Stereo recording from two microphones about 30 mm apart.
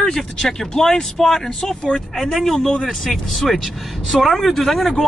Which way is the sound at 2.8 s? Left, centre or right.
Centre.